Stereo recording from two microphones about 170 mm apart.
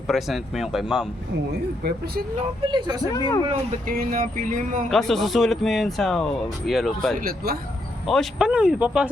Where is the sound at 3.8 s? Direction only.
55° right (ahead or behind).